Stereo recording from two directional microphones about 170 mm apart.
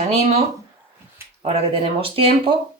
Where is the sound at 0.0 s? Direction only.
40° right (ahead or behind).